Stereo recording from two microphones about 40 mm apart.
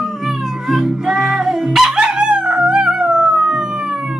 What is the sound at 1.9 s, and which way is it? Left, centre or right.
Howl, right.